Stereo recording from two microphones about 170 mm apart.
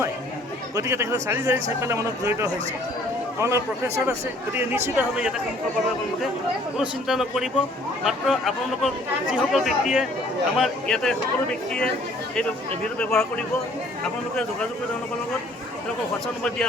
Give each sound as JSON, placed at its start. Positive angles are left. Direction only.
{"t": 0.8, "sound": "speech", "side_deg": -15}
{"t": 6.7, "sound": "speech", "side_deg": 0}
{"t": 13.0, "sound": "speech", "side_deg": 5}